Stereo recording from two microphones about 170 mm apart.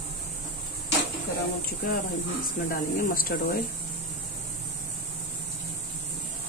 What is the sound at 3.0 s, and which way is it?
Speech, 55° left (ahead or behind).